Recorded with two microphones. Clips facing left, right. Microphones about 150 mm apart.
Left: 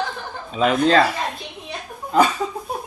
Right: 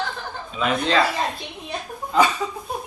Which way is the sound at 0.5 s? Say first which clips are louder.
Left 5 dB; 45° left (ahead or behind).